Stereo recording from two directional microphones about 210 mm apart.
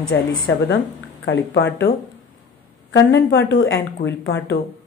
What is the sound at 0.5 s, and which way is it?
A woman's voice, 70° left (ahead or behind).